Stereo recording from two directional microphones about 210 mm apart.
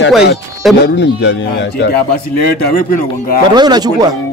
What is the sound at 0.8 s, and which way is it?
Speech, 55° left (ahead or behind).